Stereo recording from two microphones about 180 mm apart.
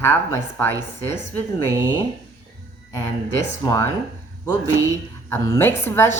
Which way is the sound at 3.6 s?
20° left (ahead or behind).